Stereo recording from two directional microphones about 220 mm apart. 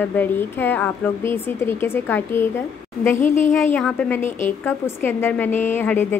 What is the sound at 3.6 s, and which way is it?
A woman's voice, 5° left (ahead or behind).